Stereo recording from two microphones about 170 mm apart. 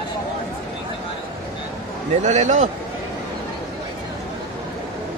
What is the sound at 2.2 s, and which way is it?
Speech, 45° right (ahead or behind).